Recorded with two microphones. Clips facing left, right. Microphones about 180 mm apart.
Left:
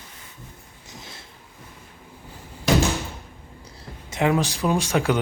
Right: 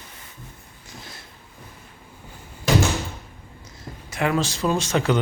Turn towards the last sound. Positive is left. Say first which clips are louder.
# even
turn(degrees=10)  # may be behind; listen again after turning